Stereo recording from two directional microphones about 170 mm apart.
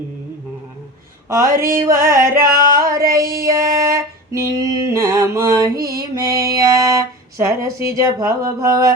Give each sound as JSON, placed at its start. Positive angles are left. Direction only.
{"t": 1.5, "sound": "a sound", "side_deg": -55}
{"t": 1.7, "sound": "music", "side_deg": -15}
{"t": 2.4, "sound": "singing", "side_deg": -55}
{"t": 3.3, "sound": "female singing", "side_deg": -20}
{"t": 8.4, "sound": "mantra", "side_deg": -20}